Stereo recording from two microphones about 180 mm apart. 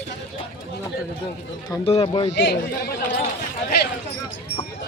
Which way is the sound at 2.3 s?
70° left (ahead or behind).